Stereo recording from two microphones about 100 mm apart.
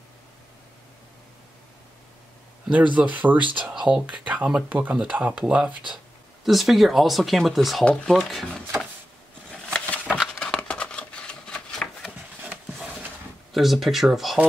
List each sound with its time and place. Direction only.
2.7 s speech: 15° right (ahead or behind)
9.5 s a sound: 10° left (ahead or behind)
13.5 s speech: centre (ahead or behind)